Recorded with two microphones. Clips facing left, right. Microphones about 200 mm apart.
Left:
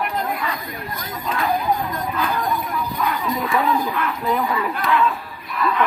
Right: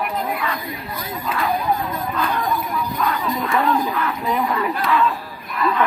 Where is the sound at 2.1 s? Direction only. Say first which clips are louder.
Right 1 dB; centre (ahead or behind).